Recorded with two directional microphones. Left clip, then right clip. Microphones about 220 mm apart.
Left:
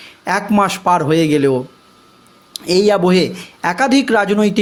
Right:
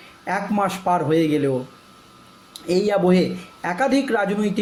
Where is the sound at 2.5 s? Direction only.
45° left (ahead or behind).